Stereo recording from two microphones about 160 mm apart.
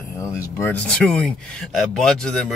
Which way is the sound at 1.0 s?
5° left (ahead or behind).